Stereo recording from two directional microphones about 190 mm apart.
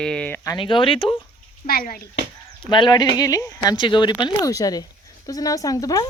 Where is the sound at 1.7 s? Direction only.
50° left (ahead or behind).